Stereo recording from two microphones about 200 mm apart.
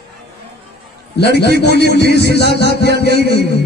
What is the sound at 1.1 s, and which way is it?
A man's voice, 55° left (ahead or behind).